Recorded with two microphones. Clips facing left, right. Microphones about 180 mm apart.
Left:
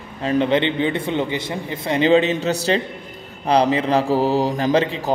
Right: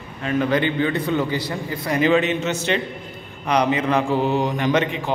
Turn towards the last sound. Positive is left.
turn(degrees=30)  # may be behind; listen again after turning